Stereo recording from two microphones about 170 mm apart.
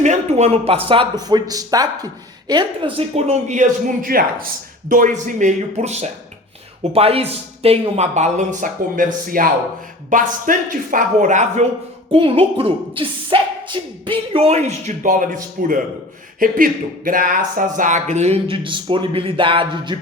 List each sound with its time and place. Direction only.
0.0 s a woman's voice: 45° right (ahead or behind); by 2.9 s 25° right (ahead or behind)
3.2 s a man's voice: 45° right (ahead or behind)
12.1 s speech: 35° right (ahead or behind)